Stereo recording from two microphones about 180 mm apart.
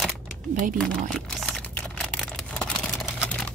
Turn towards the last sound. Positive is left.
turn(degrees=5)  # may be behind; listen again after turning